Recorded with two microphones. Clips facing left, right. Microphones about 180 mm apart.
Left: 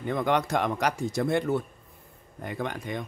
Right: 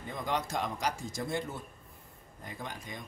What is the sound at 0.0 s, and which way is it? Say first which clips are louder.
Speech: left 9 dB; 65° left (ahead or behind).